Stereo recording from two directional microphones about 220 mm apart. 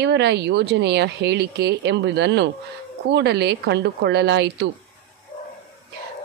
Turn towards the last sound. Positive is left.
turn(degrees=-50)  # may be behind; listen again after turning